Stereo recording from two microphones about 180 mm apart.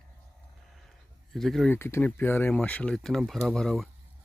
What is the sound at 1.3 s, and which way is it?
Speech, centre (ahead or behind).